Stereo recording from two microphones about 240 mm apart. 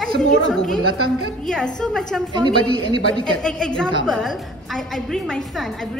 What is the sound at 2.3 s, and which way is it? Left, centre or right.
Speech, centre.